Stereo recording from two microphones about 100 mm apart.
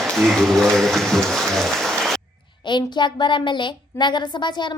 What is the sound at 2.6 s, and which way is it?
A child's voice, 50° left (ahead or behind).